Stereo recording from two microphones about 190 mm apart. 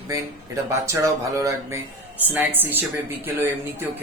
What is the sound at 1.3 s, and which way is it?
A woman's voice, 15° right (ahead or behind).